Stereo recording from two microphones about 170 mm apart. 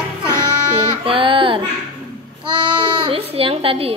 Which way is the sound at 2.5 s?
30° right (ahead or behind).